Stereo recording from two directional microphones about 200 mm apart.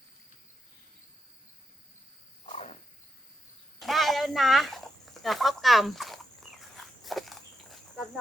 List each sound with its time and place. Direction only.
2.5 s cricket: 35° left (ahead or behind)
3.8 s a sound: centre (ahead or behind)
6.7 s walk: centre (ahead or behind)